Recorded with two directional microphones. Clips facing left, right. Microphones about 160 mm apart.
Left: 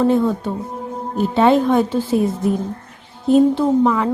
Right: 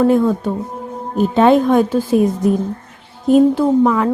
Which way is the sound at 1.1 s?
15° right (ahead or behind).